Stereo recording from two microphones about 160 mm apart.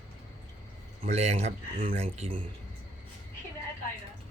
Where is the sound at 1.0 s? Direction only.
45° right (ahead or behind).